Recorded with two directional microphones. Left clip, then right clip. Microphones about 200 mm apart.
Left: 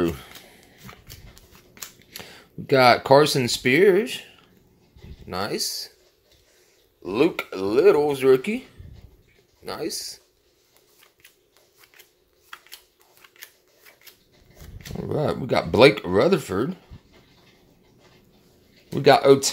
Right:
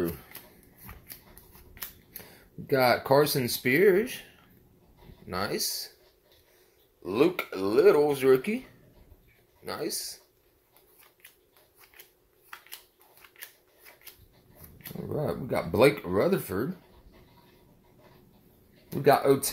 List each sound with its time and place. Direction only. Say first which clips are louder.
2.1 s speech: left 11 dB; 30° left (ahead or behind)
7.0 s speech: left 3 dB; 30° left (ahead or behind)
9.7 s speech: left 4 dB; 25° left (ahead or behind)
15.0 s speech: left 7 dB; 30° left (ahead or behind)
18.9 s speech: left 7 dB; 30° left (ahead or behind)